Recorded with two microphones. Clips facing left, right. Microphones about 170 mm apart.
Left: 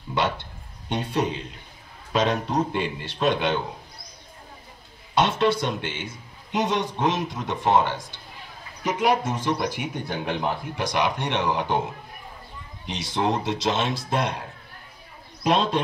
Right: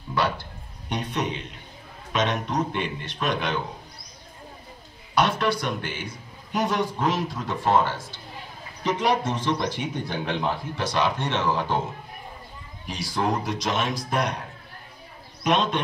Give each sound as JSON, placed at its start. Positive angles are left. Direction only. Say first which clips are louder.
{"t": 0.1, "sound": "a man's voice", "louder": "even", "side_deg": 25}
{"t": 5.1, "sound": "a man's voice", "louder": "left 2 dB", "side_deg": 25}
{"t": 15.4, "sound": "a man's voice", "louder": "left 1 dB", "side_deg": 30}